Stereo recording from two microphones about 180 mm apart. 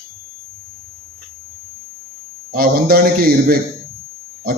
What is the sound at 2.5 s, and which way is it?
A man's voice, 55° right (ahead or behind).